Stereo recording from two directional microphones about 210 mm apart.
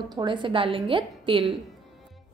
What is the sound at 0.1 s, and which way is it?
A woman's voice, 20° right (ahead or behind).